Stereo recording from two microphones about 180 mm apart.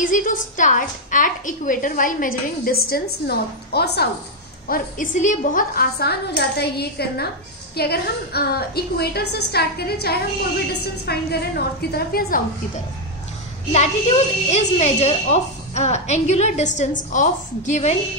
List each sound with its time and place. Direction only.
0.0 s a woman's voice: 50° left (ahead or behind)
4.6 s a woman's voice: 50° left (ahead or behind)
13.7 s speech: 35° left (ahead or behind)